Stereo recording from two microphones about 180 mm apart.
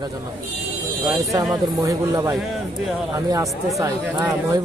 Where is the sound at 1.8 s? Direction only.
15° right (ahead or behind).